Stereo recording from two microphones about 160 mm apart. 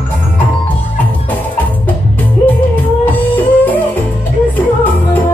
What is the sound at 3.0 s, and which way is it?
Music, 10° left (ahead or behind).